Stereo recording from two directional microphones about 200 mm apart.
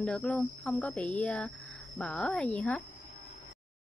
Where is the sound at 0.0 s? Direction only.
5° left (ahead or behind).